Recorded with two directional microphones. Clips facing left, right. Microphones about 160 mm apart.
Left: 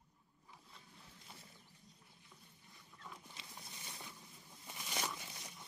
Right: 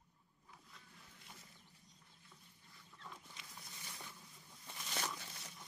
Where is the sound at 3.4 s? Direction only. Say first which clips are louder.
Left 2 dB; 25° left (ahead or behind).